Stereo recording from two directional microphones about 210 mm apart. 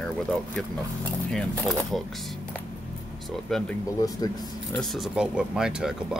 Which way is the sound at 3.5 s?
Centre (ahead or behind).